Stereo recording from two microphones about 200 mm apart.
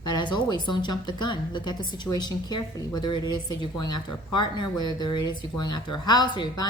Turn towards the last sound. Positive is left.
turn(degrees=20)  # may be behind; listen again after turning